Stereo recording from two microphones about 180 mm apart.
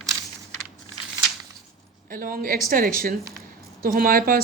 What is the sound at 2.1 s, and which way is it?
Speech, 50° right (ahead or behind).